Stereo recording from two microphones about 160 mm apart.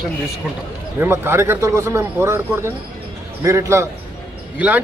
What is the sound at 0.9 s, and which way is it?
A man's voice, 15° right (ahead or behind).